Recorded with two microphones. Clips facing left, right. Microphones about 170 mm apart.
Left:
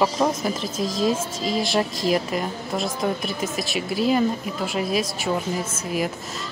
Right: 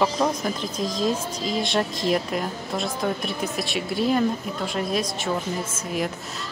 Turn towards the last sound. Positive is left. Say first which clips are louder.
# left 2 dB
turn(degrees=5)  # may be behind; listen again after turning